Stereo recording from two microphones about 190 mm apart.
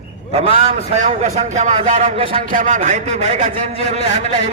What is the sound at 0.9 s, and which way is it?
A man's voice, 40° right (ahead or behind).